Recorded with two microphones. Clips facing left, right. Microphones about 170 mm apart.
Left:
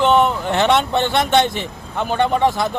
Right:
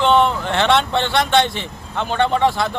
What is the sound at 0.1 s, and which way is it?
Speech, 10° left (ahead or behind).